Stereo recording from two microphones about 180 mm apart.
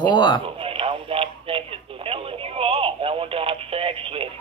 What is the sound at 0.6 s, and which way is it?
Radio, 30° right (ahead or behind).